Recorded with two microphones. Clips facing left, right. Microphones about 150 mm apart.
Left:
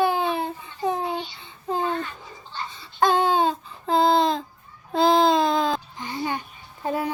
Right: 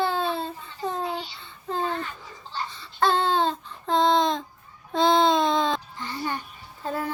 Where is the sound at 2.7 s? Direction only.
15° left (ahead or behind).